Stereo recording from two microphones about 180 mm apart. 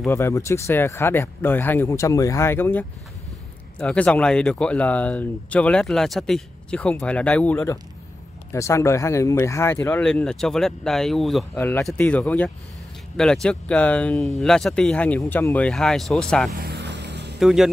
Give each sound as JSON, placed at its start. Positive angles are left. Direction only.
{"t": 0.1, "sound": "speech", "side_deg": 15}
{"t": 16.5, "sound": "music", "side_deg": -65}
{"t": 17.4, "sound": "speech", "side_deg": 0}